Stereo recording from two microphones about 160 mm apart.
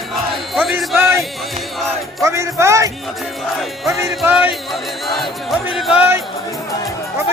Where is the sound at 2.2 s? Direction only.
20° right (ahead or behind).